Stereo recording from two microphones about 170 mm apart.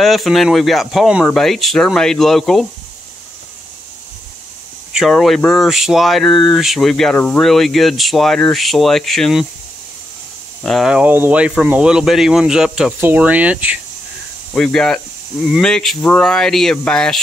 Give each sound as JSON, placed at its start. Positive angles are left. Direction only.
{"t": 0.0, "sound": "speech", "side_deg": 0}
{"t": 4.9, "sound": "speech", "side_deg": 0}
{"t": 10.6, "sound": "speech", "side_deg": 0}
{"t": 14.5, "sound": "speech", "side_deg": 5}